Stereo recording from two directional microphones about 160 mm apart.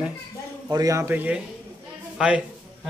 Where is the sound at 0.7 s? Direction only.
20° right (ahead or behind).